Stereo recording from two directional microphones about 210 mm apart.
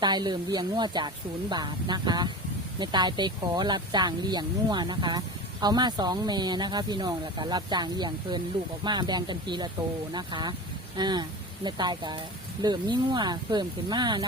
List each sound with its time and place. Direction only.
0.0 s speech: 20° right (ahead or behind)